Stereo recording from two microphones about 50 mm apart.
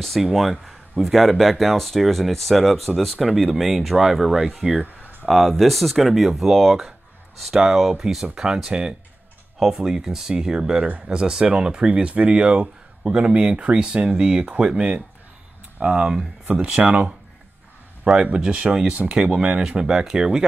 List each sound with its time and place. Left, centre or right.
0.2 s speech: centre
5.0 s a sound: right
5.3 s speech: centre
16.4 s speech: right
18.0 s speech: right